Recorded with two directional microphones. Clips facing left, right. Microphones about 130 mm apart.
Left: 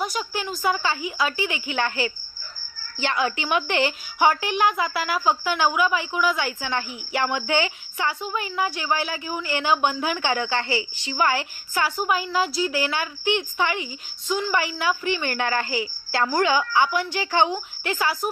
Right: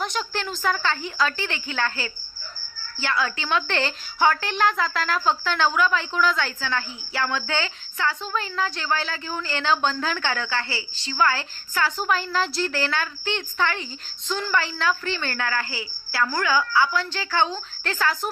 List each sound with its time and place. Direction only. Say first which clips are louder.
0.0 s a woman's voice: even; 10° left (ahead or behind)